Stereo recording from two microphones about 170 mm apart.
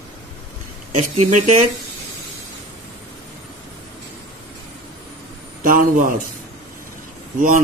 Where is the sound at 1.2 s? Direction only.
40° right (ahead or behind).